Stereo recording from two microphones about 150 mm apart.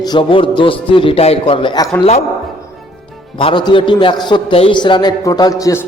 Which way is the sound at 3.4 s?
35° left (ahead or behind).